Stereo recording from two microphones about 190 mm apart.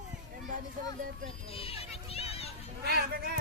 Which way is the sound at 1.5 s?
30° left (ahead or behind).